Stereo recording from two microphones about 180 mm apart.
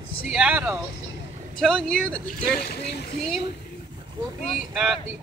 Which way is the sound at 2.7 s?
65° left (ahead or behind).